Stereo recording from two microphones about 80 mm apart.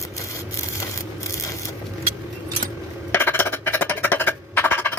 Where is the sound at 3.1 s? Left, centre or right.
Left.